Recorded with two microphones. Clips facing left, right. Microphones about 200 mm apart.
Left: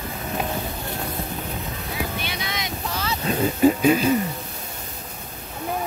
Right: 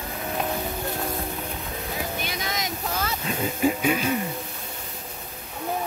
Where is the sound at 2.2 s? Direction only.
45° right (ahead or behind).